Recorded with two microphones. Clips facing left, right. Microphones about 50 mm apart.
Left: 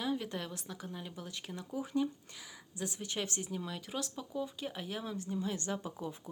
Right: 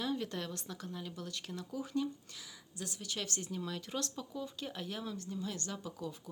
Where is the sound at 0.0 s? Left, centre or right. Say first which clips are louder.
Left 1 dB; centre.